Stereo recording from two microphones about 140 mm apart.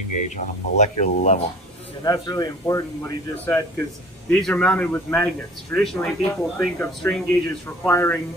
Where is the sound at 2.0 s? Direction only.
30° left (ahead or behind).